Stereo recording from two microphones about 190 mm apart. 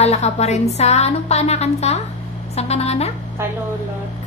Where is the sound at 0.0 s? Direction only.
35° left (ahead or behind).